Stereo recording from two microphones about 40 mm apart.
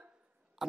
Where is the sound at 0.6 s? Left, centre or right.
Centre.